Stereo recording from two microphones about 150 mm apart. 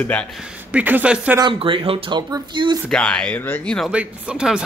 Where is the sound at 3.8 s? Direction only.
5° right (ahead or behind).